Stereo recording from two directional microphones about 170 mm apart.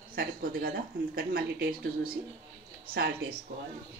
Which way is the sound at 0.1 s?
60° right (ahead or behind).